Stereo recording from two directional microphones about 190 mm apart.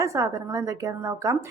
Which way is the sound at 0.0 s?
15° right (ahead or behind).